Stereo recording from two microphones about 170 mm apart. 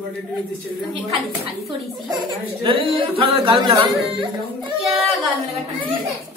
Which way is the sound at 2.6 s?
30° right (ahead or behind).